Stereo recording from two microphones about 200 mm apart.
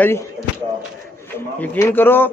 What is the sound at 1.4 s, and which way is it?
Speech, 10° left (ahead or behind).